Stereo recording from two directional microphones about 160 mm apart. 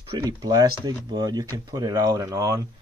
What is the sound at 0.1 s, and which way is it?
Speech, 25° right (ahead or behind).